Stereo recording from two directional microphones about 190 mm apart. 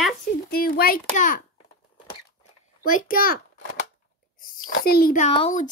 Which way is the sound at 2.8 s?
45° left (ahead or behind).